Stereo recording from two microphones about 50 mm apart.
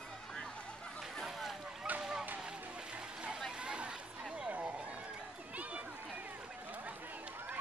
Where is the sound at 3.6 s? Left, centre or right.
Right.